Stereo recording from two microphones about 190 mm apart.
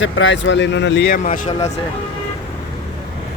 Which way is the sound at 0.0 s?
75° left (ahead or behind).